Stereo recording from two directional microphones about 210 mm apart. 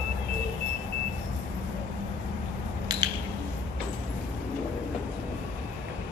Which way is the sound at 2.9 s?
20° right (ahead or behind).